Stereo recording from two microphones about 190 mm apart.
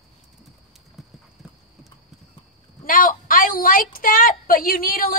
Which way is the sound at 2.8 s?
45° left (ahead or behind).